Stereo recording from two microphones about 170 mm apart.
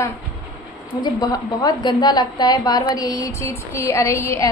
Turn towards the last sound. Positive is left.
turn(degrees=15)  # may be behind; listen again after turning